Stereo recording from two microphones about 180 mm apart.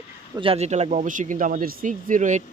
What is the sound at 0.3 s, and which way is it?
Speech, 30° right (ahead or behind).